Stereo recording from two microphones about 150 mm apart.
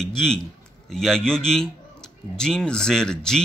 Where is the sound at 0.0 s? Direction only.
5° left (ahead or behind).